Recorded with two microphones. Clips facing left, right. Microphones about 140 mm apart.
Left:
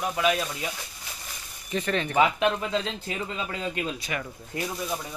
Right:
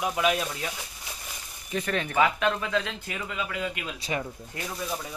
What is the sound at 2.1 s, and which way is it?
Speech, 20° left (ahead or behind).